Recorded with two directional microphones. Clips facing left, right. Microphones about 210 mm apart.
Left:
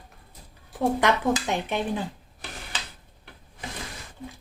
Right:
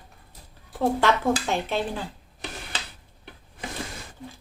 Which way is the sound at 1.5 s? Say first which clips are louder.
Even; 20° left (ahead or behind).